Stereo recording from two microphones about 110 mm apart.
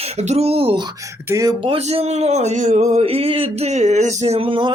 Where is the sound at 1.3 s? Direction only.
30° right (ahead or behind).